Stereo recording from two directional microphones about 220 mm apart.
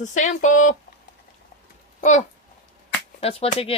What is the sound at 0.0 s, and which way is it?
Speech, 35° left (ahead or behind).